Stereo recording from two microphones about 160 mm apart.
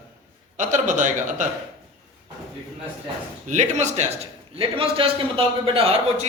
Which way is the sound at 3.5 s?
50° right (ahead or behind).